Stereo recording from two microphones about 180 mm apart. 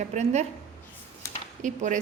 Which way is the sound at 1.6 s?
45° right (ahead or behind).